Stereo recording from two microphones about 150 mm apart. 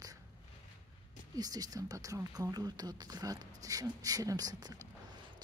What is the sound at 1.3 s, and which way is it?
Speech, 25° right (ahead or behind).